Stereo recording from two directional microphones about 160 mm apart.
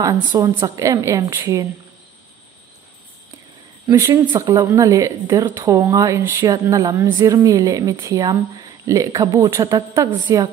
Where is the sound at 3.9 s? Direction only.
20° right (ahead or behind).